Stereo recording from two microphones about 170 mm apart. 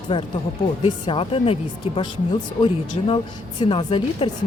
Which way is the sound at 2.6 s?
30° left (ahead or behind).